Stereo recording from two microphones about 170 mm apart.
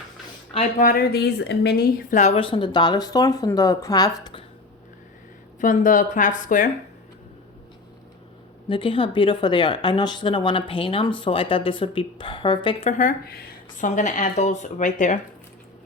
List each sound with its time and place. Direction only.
0.5 s speech: 45° left (ahead or behind); by 4.4 s 25° left (ahead or behind)
5.5 s speech: 50° left (ahead or behind)
8.7 s speech: 30° left (ahead or behind); by 15.2 s 45° left (ahead or behind)